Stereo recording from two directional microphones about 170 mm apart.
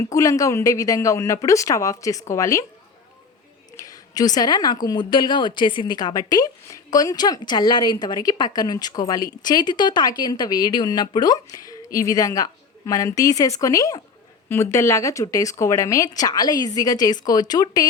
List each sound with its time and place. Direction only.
0.0 s a woman's voice: 20° left (ahead or behind)
3.8 s a woman's voice: 20° left (ahead or behind)